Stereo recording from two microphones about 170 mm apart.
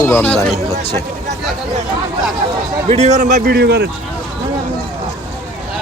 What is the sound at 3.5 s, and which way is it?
Speech, 70° right (ahead or behind).